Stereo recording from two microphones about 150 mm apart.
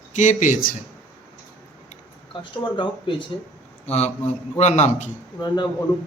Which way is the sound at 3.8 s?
45° left (ahead or behind).